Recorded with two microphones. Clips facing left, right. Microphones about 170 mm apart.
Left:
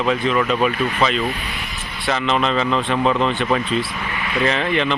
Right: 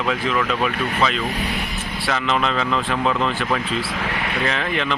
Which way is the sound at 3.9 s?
85° right.